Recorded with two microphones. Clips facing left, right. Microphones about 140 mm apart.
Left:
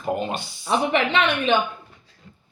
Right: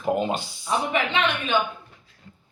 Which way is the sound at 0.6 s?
75° left (ahead or behind).